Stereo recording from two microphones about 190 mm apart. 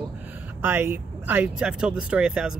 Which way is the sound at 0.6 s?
10° right (ahead or behind).